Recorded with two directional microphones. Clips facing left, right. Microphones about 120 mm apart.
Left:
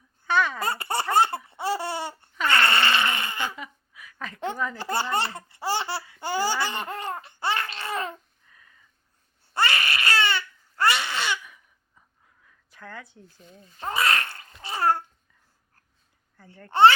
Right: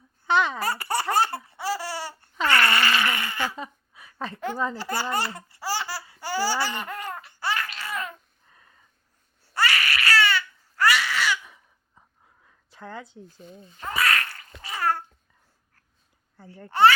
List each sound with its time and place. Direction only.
0.3 s speech: 20° right (ahead or behind)
0.6 s speech: 25° left (ahead or behind)
1.1 s laughter: 20° left (ahead or behind)
2.5 s a sound: 25° left (ahead or behind)
3.5 s a sound: 35° right (ahead or behind)
4.5 s speech: 30° right (ahead or behind)
4.8 s speech: 25° left (ahead or behind)
5.1 s laughter: 25° left (ahead or behind)
8.4 s sniff: 30° right (ahead or behind)
9.6 s baby cry: 25° left (ahead or behind)
11.4 s a sound: 30° right (ahead or behind)
13.7 s babbling: 30° left (ahead or behind)
16.7 s speech: 25° left (ahead or behind)